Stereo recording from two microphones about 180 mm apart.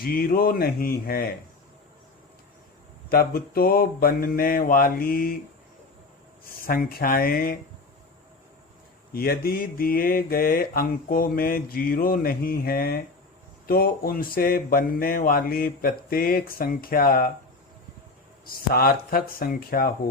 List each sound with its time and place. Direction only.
0.0 s speech: 55° left (ahead or behind)
3.1 s mantra: 55° left (ahead or behind)
6.4 s mantra: 55° left (ahead or behind)
9.1 s mantra: 55° left (ahead or behind)
18.4 s speech: 55° left (ahead or behind)
19.4 s mantra: 55° left (ahead or behind)